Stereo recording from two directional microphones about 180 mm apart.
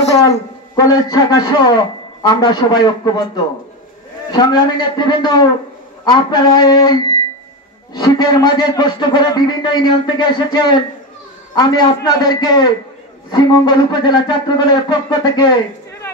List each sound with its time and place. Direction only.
0.2 s a man's voice: 20° left (ahead or behind)